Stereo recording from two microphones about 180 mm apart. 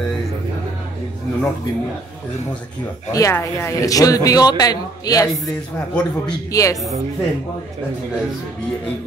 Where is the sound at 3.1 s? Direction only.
15° left (ahead or behind).